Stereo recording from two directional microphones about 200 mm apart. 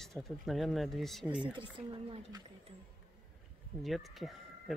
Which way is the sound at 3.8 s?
Centre (ahead or behind).